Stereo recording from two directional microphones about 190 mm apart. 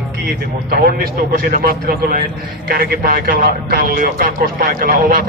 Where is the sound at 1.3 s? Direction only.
50° right (ahead or behind).